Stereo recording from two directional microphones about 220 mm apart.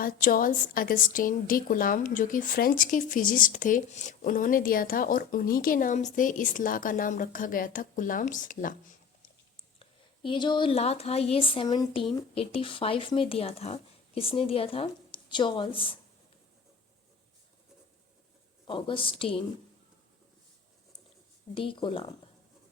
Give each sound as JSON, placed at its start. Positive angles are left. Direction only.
{"t": 0.0, "sound": "a woman's voice", "side_deg": 40}
{"t": 10.2, "sound": "speech", "side_deg": 20}
{"t": 18.7, "sound": "speech", "side_deg": 25}
{"t": 21.5, "sound": "speech", "side_deg": 25}